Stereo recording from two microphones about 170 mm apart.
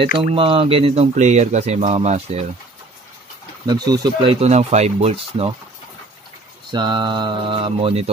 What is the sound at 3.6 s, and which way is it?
Speech, 25° right (ahead or behind).